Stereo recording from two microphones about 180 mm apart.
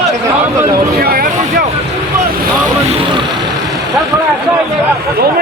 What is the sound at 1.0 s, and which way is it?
Speech, 55° right (ahead or behind).